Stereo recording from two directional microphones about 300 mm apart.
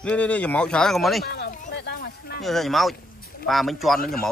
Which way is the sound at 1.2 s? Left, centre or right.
Left.